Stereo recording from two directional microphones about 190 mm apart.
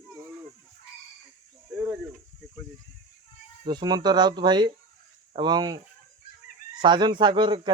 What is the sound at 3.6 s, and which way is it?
Speech, 20° right (ahead or behind).